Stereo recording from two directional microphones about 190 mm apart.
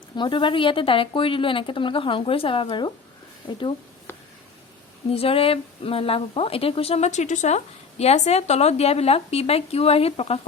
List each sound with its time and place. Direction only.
0.2 s a woman's voice: 25° left (ahead or behind)
5.1 s speech: 30° left (ahead or behind)